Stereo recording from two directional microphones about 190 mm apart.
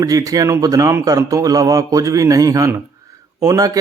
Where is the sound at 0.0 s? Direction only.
20° right (ahead or behind).